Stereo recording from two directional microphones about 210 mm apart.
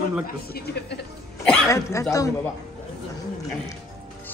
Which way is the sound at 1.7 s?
15° left (ahead or behind).